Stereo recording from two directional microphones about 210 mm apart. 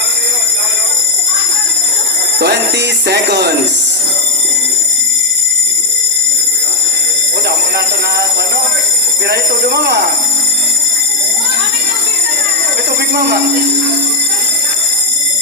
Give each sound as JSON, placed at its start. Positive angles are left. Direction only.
{"t": 2.4, "sound": "music", "side_deg": -55}
{"t": 7.4, "sound": "a sound", "side_deg": -50}
{"t": 9.2, "sound": "music", "side_deg": -50}
{"t": 13.0, "sound": "speech", "side_deg": -50}